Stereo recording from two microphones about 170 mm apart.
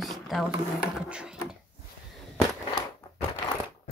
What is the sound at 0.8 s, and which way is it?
Speech, 5° right (ahead or behind).